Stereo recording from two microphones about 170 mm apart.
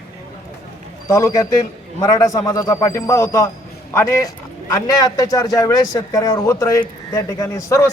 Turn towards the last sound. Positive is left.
turn(degrees=15)  # may be behind; listen again after turning